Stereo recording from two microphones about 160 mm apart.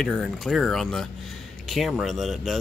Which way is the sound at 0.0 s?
Centre (ahead or behind).